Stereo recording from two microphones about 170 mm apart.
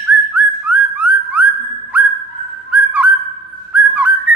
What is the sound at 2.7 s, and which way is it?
Owl, 10° right (ahead or behind).